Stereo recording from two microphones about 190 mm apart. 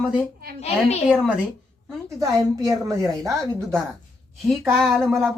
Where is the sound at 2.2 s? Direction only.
15° right (ahead or behind).